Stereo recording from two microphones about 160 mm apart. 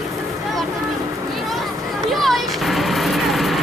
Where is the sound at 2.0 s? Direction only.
Centre (ahead or behind).